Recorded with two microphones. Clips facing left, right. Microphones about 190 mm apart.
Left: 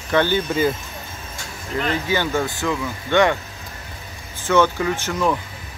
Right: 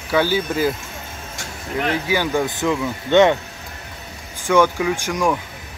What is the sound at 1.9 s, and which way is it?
Speech, 10° right (ahead or behind).